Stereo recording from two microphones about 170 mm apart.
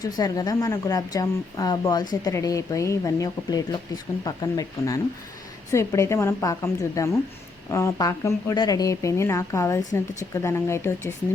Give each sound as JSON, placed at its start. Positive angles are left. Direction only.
{"t": 0.0, "sound": "speech", "side_deg": 20}